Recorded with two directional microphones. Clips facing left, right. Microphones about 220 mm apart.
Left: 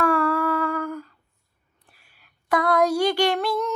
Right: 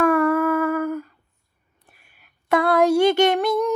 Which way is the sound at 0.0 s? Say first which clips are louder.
Right 4 dB; 20° right (ahead or behind).